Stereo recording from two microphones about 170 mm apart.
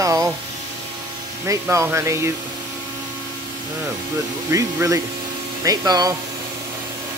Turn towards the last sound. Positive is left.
turn(degrees=-20)  # may be behind; listen again after turning